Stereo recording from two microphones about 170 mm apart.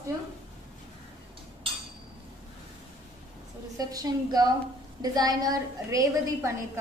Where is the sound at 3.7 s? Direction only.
20° right (ahead or behind).